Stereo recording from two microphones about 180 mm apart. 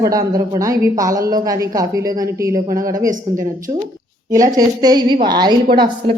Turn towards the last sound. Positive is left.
turn(degrees=-25)  # may be behind; listen again after turning